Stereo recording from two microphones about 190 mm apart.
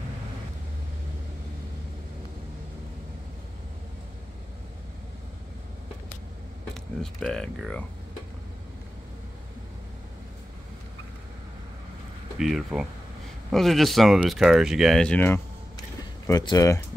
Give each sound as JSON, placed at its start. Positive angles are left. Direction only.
{"t": 6.7, "sound": "speech", "side_deg": 0}
{"t": 12.4, "sound": "speech", "side_deg": 0}